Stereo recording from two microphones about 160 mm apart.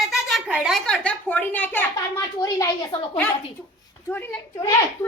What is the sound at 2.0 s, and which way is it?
A woman's voice, 20° left (ahead or behind).